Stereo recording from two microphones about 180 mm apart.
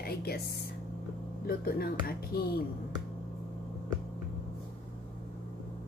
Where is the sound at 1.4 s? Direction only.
55° left (ahead or behind).